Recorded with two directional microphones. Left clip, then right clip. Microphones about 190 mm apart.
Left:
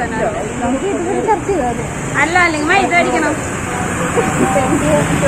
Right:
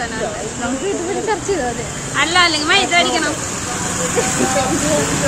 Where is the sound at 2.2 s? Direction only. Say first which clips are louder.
Left 1 dB; 25° right (ahead or behind).